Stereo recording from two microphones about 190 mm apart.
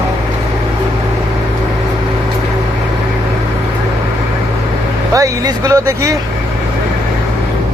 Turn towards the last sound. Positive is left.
turn(degrees=-15)  # may be behind; listen again after turning